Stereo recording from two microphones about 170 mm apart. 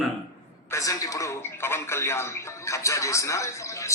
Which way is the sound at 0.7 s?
20° left (ahead or behind).